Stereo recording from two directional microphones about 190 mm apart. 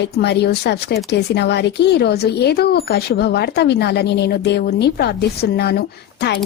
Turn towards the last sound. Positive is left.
turn(degrees=60)  # may be behind; listen again after turning